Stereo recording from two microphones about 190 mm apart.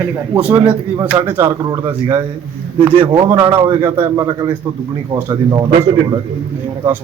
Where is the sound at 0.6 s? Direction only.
15° right (ahead or behind).